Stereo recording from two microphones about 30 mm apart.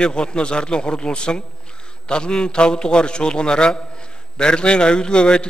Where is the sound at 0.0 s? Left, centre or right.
Left.